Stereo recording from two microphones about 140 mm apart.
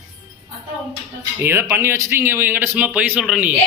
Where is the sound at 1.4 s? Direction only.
20° right (ahead or behind).